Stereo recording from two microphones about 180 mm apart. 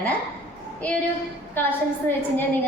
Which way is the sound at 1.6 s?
10° left (ahead or behind).